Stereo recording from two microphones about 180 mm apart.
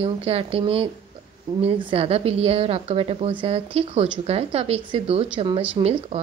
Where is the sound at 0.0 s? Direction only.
30° right (ahead or behind).